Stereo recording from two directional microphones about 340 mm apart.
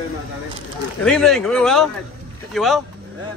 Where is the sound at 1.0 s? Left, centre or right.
Centre.